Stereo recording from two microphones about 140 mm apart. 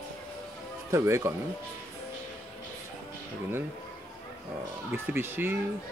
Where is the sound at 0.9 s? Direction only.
20° right (ahead or behind).